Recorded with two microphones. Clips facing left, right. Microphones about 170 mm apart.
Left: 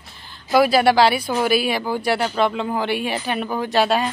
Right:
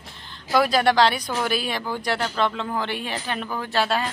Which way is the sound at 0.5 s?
5° left (ahead or behind).